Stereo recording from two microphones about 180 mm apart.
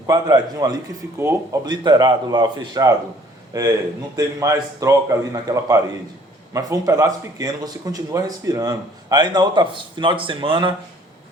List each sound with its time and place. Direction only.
0.1 s a man's voice: 20° right (ahead or behind)